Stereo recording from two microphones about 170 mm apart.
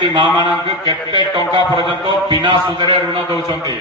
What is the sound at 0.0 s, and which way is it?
A man's voice, 30° right (ahead or behind).